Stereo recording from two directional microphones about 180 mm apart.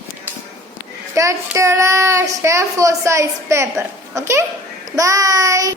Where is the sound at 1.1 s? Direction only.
15° right (ahead or behind).